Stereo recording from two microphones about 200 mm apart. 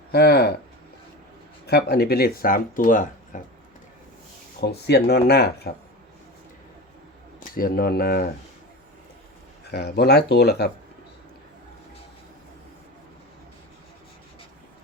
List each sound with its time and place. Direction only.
0.1 s speech: 55° left (ahead or behind)
1.6 s speech: 55° left (ahead or behind)
3.3 s a sound: 40° left (ahead or behind)
4.9 s speech: 55° left (ahead or behind)
7.3 s speech: 45° left (ahead or behind)
9.6 s speech: 50° left (ahead or behind)